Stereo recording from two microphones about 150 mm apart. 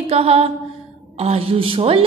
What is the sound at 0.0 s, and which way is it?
Mantra, 40° right (ahead or behind).